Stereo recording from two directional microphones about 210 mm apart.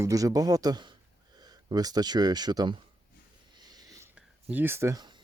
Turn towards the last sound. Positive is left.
turn(degrees=-20)  # may be behind; listen again after turning